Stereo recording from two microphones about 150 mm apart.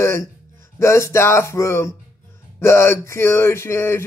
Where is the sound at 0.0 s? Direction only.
20° left (ahead or behind).